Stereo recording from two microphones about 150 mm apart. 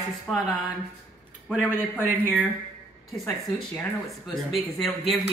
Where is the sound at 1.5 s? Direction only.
10° right (ahead or behind).